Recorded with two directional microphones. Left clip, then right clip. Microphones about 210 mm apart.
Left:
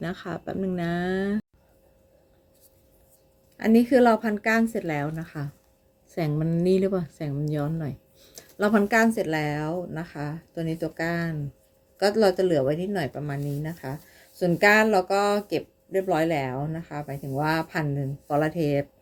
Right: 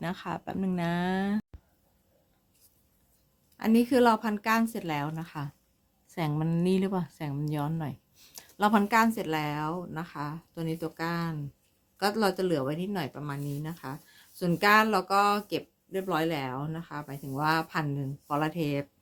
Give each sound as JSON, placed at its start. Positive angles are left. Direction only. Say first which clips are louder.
{"t": 0.0, "sound": "speech", "louder": "left 2 dB", "side_deg": -20}
{"t": 3.6, "sound": "a woman's voice", "louder": "left 5 dB", "side_deg": -20}